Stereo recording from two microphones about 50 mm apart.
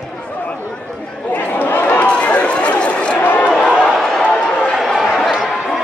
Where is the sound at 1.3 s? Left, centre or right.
Left.